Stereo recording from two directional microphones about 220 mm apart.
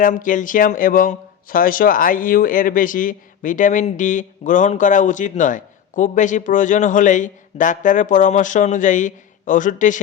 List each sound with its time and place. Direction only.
0.0 s speech: 35° left (ahead or behind)